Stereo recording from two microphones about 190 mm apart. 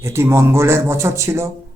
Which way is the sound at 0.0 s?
15° right (ahead or behind).